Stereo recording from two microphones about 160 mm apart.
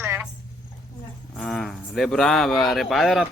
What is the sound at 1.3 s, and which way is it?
Speech, centre (ahead or behind).